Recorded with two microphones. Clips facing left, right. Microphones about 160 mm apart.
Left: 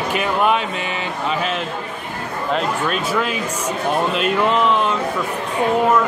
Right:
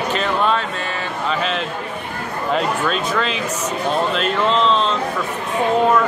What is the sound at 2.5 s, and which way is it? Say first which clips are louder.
Speech: right 1 dB; 10° left (ahead or behind).